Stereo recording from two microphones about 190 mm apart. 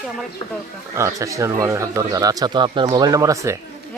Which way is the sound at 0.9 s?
15° right (ahead or behind).